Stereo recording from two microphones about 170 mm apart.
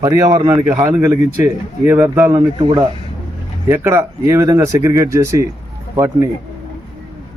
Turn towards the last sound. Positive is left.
turn(degrees=-15)  # may be behind; listen again after turning